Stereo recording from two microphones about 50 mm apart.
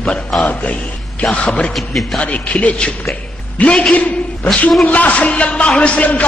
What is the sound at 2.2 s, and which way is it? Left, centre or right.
Speech, left.